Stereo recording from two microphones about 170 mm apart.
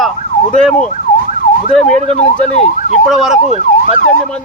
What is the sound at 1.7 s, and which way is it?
Speech, 5° left (ahead or behind).